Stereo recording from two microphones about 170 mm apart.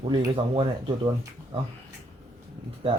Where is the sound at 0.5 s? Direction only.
30° right (ahead or behind).